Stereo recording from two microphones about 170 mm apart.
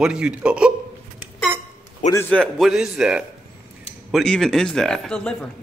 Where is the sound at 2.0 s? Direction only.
10° left (ahead or behind).